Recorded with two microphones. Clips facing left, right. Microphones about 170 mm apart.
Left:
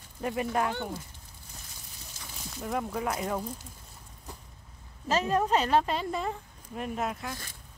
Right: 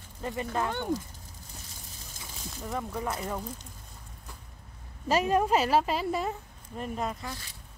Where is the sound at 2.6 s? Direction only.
5° left (ahead or behind).